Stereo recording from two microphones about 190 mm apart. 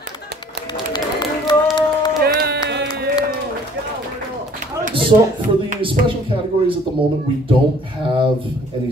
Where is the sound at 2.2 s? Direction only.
60° right (ahead or behind).